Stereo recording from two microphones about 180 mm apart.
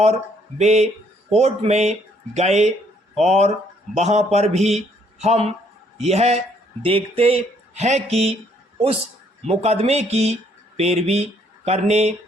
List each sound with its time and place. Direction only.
0.6 s speech: 40° right (ahead or behind)
9.5 s speech: 35° right (ahead or behind)